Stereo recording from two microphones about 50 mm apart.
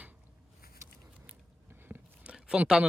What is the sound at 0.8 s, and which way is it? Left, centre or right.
Biting, right.